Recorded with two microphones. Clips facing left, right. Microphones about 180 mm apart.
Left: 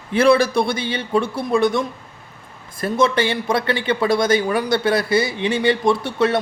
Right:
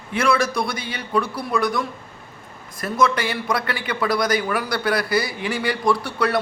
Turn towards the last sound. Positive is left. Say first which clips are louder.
# left 3 dB
turn(degrees=25)  # may be behind; listen again after turning